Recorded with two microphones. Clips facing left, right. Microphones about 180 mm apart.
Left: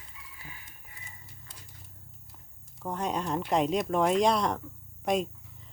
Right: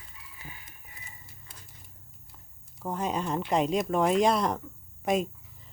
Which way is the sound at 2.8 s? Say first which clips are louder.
Right 1 dB; centre (ahead or behind).